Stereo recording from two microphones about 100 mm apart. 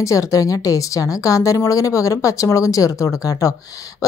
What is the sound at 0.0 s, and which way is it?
A woman's voice, 35° left (ahead or behind).